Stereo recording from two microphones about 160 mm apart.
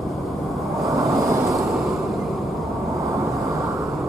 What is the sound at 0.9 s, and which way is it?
Vehicle, 20° right (ahead or behind).